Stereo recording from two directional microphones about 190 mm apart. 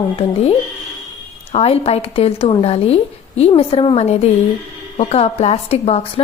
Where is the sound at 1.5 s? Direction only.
30° left (ahead or behind).